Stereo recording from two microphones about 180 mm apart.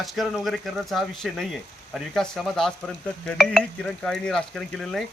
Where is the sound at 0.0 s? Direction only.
Centre (ahead or behind).